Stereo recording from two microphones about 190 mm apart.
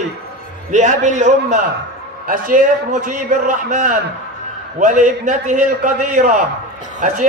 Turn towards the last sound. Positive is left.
turn(degrees=-45)  # may be behind; listen again after turning